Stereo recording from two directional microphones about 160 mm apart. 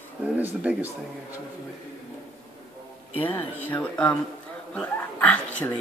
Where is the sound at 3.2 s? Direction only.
10° left (ahead or behind).